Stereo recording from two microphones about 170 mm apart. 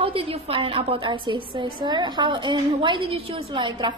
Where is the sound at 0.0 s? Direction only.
35° right (ahead or behind).